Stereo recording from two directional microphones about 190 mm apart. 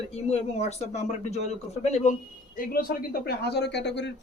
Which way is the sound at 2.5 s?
50° left (ahead or behind).